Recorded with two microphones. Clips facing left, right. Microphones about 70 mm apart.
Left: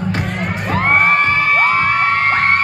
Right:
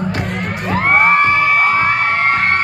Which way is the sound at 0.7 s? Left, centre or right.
Centre.